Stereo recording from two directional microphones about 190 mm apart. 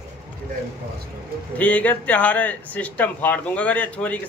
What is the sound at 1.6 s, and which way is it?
Speech, 10° left (ahead or behind).